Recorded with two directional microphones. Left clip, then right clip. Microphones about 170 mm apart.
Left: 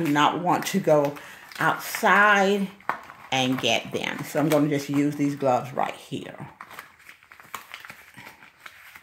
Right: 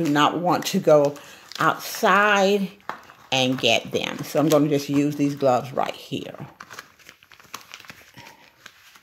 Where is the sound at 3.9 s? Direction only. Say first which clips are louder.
Right 3 dB; 45° right (ahead or behind).